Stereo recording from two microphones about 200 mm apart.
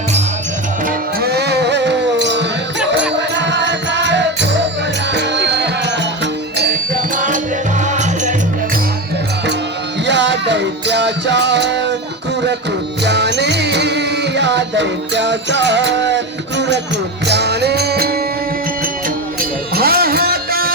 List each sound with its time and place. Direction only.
0.9 s music: 50° right (ahead or behind); by 8.4 s 35° right (ahead or behind)
10.1 s music: 60° right (ahead or behind)
13.1 s music: 60° right (ahead or behind)
19.7 s music: 50° right (ahead or behind)